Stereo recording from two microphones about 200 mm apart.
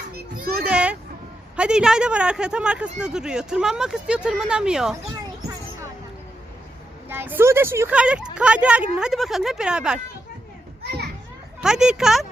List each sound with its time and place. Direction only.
0.3 s children playing: 50° right (ahead or behind)
0.7 s a sound: 5° right (ahead or behind)
1.5 s speech: 5° right (ahead or behind)
7.1 s speech: 10° right (ahead or behind)
11.6 s speech: 5° right (ahead or behind)